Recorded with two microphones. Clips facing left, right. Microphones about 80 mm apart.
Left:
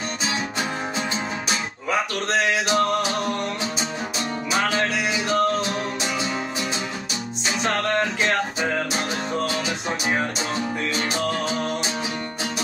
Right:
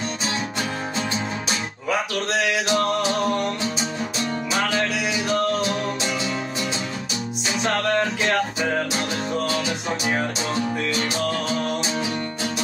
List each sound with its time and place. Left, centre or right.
1.9 s a sound: left
4.6 s music: left
7.4 s music: left
11.0 s music: left